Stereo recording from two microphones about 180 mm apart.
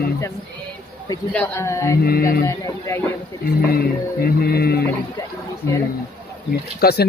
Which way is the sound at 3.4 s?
55° left (ahead or behind).